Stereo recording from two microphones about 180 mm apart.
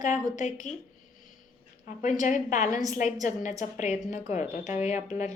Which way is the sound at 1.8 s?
45° left (ahead or behind).